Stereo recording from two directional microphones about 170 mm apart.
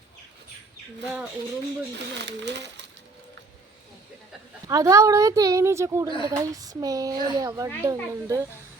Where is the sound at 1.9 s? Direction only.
90° right.